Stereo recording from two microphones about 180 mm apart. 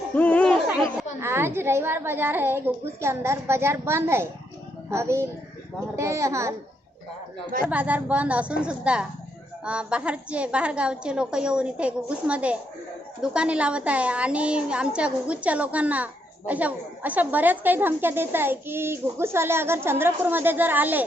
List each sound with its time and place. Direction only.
0.2 s music: 10° left (ahead or behind)
0.7 s children playing: 5° right (ahead or behind)
1.2 s a woman's voice: 15° right (ahead or behind)
7.6 s a woman's voice: 10° right (ahead or behind)